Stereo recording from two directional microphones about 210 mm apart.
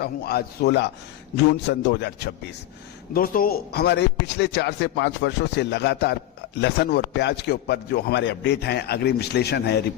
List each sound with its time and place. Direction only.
0.0 s a man's voice: 50° left (ahead or behind)